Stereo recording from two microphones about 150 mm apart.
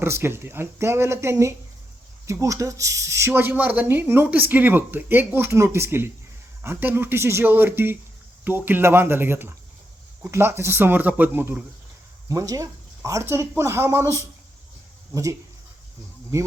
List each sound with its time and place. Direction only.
0.0 s speech: 15° right (ahead or behind)
12.3 s speech: 20° right (ahead or behind)